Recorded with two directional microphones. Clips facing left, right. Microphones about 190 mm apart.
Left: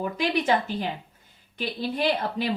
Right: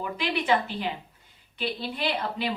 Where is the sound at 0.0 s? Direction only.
45° left (ahead or behind).